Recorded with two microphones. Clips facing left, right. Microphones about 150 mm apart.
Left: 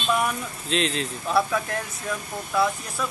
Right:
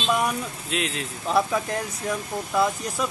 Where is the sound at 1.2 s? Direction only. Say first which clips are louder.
Right 1 dB; 20° right (ahead or behind).